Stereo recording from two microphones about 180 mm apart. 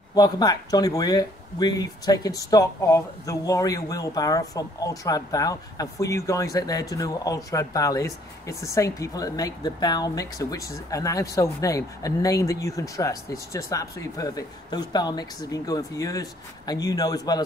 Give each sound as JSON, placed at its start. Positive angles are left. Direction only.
{"t": 0.1, "sound": "speech", "side_deg": 20}